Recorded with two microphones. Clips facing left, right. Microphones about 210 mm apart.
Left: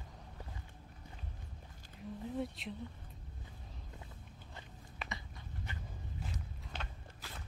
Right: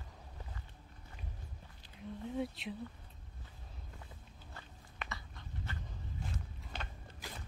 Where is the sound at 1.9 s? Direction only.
Centre (ahead or behind).